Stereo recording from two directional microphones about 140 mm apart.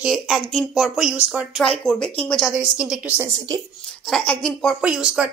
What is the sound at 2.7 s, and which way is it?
Speech, 5° right (ahead or behind).